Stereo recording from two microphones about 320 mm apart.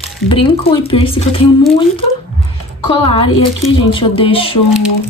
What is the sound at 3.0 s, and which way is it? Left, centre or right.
Speech, centre.